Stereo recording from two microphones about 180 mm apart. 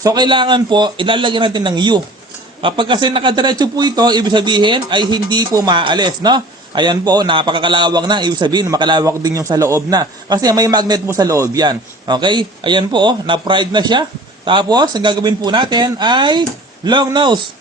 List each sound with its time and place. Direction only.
0.0 s a man's voice: 25° right (ahead or behind)